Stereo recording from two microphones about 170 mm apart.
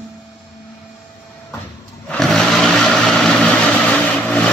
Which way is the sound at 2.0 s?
5° left (ahead or behind).